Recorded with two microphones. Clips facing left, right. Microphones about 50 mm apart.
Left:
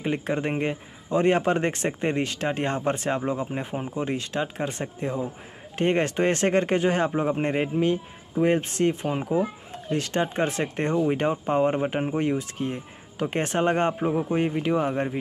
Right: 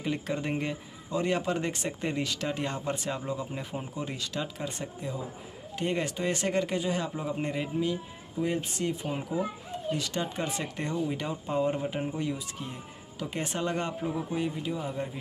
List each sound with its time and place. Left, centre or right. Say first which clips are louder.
0.0 s speech: left 5 dB; left